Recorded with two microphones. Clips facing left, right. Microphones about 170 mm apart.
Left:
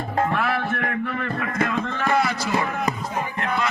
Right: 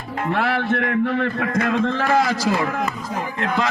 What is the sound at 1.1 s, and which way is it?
Speech, 90° right.